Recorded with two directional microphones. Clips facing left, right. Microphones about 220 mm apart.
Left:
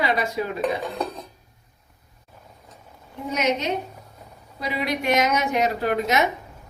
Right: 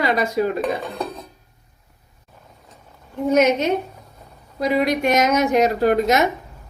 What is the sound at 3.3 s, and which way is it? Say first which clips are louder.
A woman's voice: right 7 dB; 50° right (ahead or behind).